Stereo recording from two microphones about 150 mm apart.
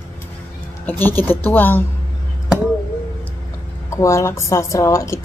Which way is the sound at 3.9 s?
20° left (ahead or behind).